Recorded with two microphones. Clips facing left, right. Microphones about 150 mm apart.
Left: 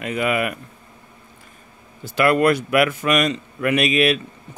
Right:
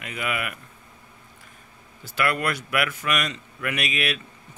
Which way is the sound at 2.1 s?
25° left (ahead or behind).